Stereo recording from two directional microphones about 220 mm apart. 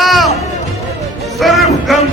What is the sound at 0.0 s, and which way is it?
Music, centre (ahead or behind).